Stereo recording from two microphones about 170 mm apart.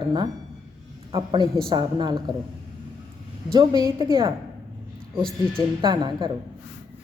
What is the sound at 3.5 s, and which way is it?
Speech, 20° right (ahead or behind).